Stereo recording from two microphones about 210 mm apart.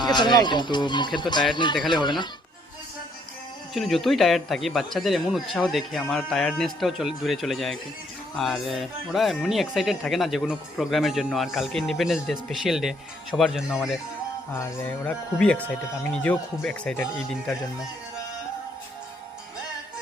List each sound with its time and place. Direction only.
0.0 s speech: 20° left (ahead or behind)
3.8 s speech: centre (ahead or behind)
15.0 s speech: 5° left (ahead or behind)